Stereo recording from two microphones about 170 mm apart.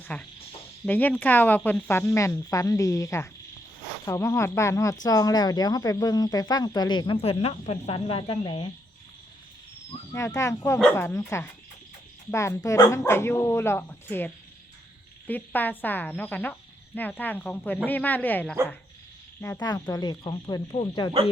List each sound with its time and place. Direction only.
0.0 s speech: 5° left (ahead or behind); by 8.7 s 30° left (ahead or behind)
10.1 s speech: 15° left (ahead or behind)